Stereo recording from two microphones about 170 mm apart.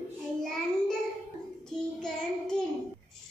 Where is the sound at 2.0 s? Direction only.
5° left (ahead or behind).